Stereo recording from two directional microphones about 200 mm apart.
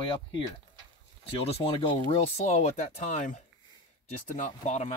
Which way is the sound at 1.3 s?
30° left (ahead or behind).